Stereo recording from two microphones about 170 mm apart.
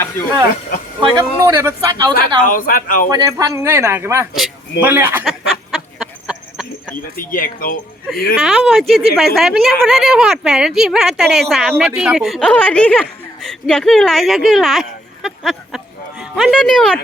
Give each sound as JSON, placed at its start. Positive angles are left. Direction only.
{"t": 0.2, "sound": "speech", "side_deg": 10}
{"t": 1.1, "sound": "speech", "side_deg": -20}
{"t": 2.1, "sound": "speech", "side_deg": 55}
{"t": 3.1, "sound": "speech", "side_deg": -20}
{"t": 5.7, "sound": "a sound", "side_deg": 0}
{"t": 7.2, "sound": "speech", "side_deg": 55}
{"t": 8.4, "sound": "a woman's voice", "side_deg": 0}